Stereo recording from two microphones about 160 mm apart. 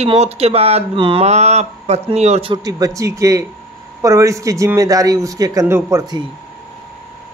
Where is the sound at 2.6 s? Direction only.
20° right (ahead or behind).